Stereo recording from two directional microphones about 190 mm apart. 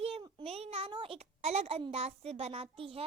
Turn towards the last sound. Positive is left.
turn(degrees=-30)  # may be behind; listen again after turning